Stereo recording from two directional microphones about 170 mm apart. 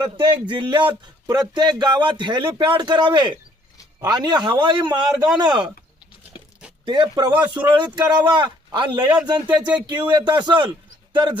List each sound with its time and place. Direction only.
0.2 s speech: 30° right (ahead or behind)
6.8 s speech: 25° right (ahead or behind)
7.9 s speech: 10° right (ahead or behind)
8.1 s speech: 25° right (ahead or behind)